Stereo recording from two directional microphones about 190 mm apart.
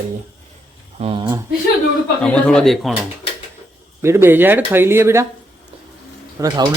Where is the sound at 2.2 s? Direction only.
5° left (ahead or behind).